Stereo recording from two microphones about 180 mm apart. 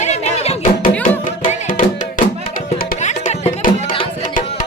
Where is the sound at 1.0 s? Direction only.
50° left (ahead or behind).